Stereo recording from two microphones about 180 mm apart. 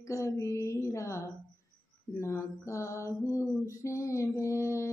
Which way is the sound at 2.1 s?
15° left (ahead or behind).